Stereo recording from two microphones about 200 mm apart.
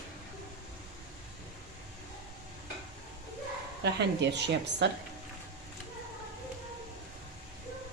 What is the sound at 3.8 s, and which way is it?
A woman's voice, 60° right (ahead or behind).